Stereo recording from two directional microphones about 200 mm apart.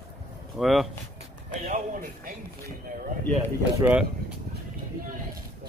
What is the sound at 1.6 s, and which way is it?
Music, 45° right (ahead or behind).